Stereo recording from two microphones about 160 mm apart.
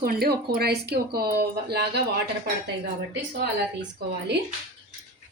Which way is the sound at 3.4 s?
90° right.